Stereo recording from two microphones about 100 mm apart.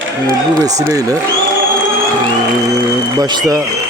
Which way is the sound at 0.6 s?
35° right (ahead or behind).